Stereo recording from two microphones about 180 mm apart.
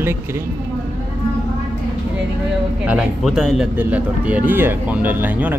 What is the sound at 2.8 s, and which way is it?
Speech, 5° right (ahead or behind).